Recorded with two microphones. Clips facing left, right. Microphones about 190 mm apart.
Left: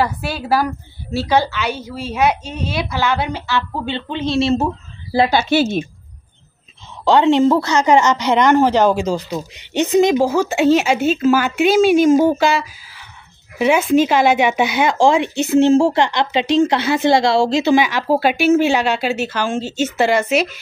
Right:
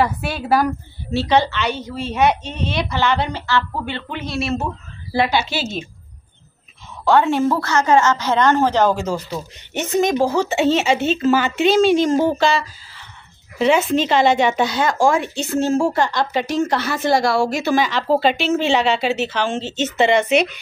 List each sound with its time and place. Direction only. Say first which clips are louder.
0.0 s a woman's voice: even; centre (ahead or behind); by 4.6 s 30° left (ahead or behind)
5.3 s a woman's voice: left 6 dB; 55° left (ahead or behind)
7.1 s a woman's voice: left 4 dB; 20° left (ahead or behind)
17.7 s a woman's voice: left 2 dB; 10° left (ahead or behind)